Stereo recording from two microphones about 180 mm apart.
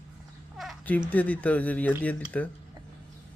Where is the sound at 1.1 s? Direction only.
10° left (ahead or behind).